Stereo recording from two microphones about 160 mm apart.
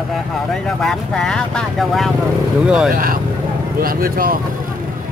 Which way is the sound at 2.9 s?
60° right (ahead or behind).